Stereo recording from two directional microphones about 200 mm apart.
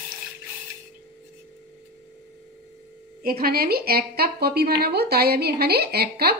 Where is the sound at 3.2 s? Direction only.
50° right (ahead or behind).